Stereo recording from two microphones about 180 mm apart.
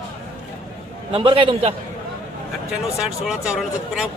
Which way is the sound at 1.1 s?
30° right (ahead or behind).